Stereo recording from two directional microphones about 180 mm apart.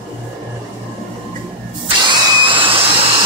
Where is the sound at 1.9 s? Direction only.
25° right (ahead or behind).